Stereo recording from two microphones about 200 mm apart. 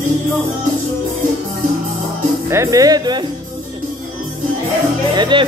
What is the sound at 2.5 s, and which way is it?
Speech, 15° right (ahead or behind).